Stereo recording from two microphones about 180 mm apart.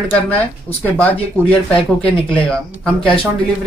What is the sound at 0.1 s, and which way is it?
Speech, 10° left (ahead or behind).